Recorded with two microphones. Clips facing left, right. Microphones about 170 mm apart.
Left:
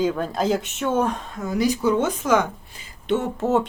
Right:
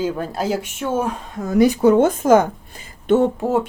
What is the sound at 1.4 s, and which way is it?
A woman's voice, 55° right (ahead or behind).